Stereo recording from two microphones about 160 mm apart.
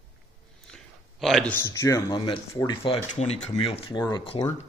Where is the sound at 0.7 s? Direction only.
Centre (ahead or behind).